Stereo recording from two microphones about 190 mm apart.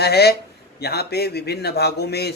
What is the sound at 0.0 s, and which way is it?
A man's voice, 60° left (ahead or behind).